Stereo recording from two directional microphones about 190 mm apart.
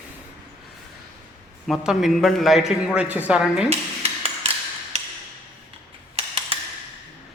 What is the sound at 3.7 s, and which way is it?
Dishes, 30° right (ahead or behind).